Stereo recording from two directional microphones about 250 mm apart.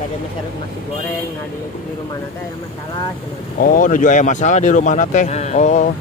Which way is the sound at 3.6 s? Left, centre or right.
Left.